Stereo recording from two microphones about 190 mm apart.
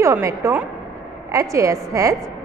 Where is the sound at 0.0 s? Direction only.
15° right (ahead or behind).